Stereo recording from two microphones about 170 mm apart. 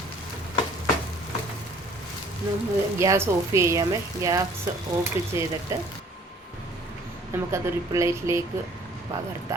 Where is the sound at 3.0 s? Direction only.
15° right (ahead or behind).